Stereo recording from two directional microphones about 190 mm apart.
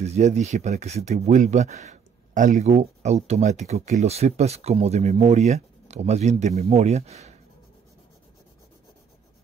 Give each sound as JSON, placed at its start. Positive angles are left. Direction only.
{"t": 0.0, "sound": "speech", "side_deg": -35}